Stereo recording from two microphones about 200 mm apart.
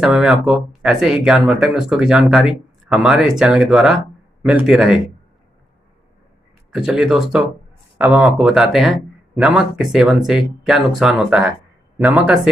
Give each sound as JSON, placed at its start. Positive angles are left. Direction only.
{"t": 0.0, "sound": "speech", "side_deg": -5}
{"t": 6.7, "sound": "speech", "side_deg": -5}